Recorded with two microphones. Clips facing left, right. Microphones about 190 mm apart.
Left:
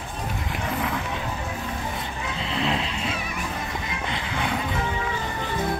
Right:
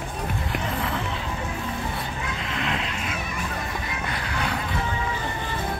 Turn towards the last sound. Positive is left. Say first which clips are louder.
# left 1 dB
turn(degrees=20)  # may be behind; listen again after turning